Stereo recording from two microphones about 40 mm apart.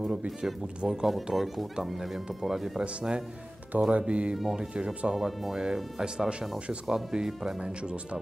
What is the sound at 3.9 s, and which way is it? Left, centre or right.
Speech, right.